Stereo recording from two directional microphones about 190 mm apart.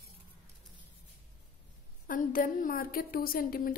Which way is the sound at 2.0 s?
45° left (ahead or behind).